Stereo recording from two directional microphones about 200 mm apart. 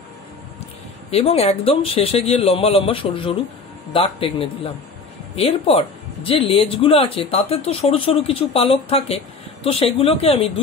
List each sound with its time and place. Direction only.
1.1 s speech: 30° left (ahead or behind)